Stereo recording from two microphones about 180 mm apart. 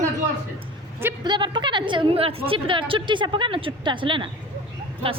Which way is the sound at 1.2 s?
25° right (ahead or behind).